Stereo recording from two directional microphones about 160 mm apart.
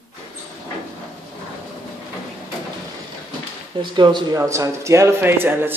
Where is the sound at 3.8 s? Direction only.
30° right (ahead or behind); by 5.7 s 15° right (ahead or behind).